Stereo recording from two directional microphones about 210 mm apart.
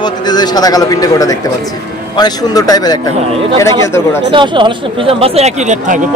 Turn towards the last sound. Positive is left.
turn(degrees=-35)  # may be behind; listen again after turning